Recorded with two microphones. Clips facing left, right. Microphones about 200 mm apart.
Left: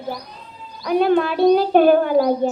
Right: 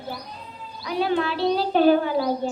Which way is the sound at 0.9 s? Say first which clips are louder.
Left 7 dB; 55° left (ahead or behind).